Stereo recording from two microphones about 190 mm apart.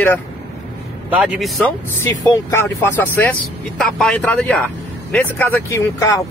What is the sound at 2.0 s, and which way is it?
Speech, 10° left (ahead or behind).